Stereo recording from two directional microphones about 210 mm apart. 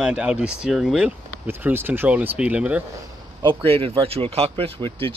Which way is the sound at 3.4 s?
25° right (ahead or behind).